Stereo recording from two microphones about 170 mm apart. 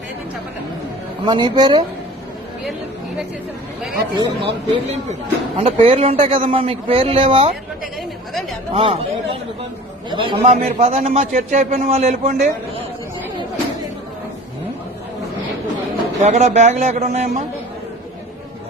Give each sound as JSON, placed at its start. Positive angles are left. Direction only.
{"t": 1.2, "sound": "a man's voice", "side_deg": -25}
{"t": 4.1, "sound": "a man's voice", "side_deg": -25}
{"t": 5.5, "sound": "a man's voice", "side_deg": -35}
{"t": 8.3, "sound": "speech", "side_deg": 0}
{"t": 8.7, "sound": "a man's voice", "side_deg": -35}
{"t": 10.1, "sound": "a man's voice", "side_deg": -30}
{"t": 16.2, "sound": "a man's voice", "side_deg": -45}